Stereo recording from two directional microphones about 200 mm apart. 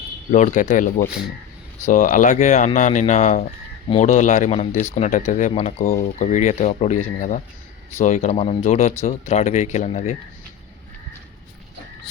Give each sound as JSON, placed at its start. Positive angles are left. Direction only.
{"t": 0.3, "sound": "speech", "side_deg": 35}
{"t": 1.9, "sound": "speech", "side_deg": 40}